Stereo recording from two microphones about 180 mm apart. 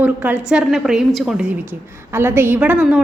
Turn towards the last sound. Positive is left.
turn(degrees=-5)  # may be behind; listen again after turning